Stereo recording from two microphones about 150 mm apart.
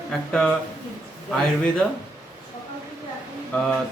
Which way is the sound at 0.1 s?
5° left (ahead or behind).